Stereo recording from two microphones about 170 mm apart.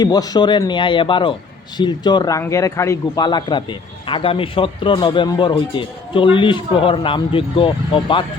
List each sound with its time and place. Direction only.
0.0 s a man's voice: 25° left (ahead or behind)